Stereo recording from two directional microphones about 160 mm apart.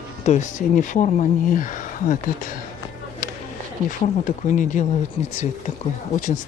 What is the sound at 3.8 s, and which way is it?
Speech, 55° left (ahead or behind).